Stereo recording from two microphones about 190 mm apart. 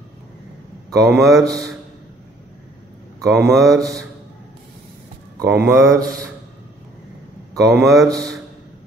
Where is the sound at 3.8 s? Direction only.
20° right (ahead or behind).